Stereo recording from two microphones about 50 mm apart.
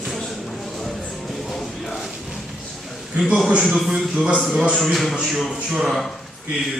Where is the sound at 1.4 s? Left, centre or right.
Centre.